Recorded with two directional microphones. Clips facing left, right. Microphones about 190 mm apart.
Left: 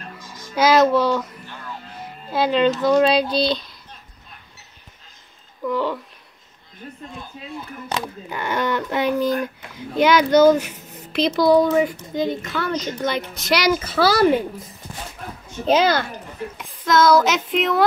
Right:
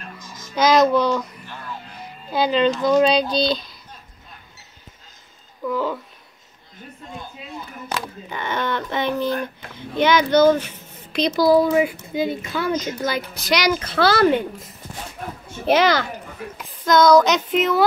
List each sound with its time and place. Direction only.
0.6 s a child's voice: 5° left (ahead or behind)
5.6 s a child's voice: centre (ahead or behind)
8.3 s a child's voice: 10° left (ahead or behind)
16.5 s a child's voice: centre (ahead or behind)